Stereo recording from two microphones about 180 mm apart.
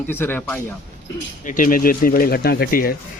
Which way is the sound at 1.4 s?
50° left (ahead or behind).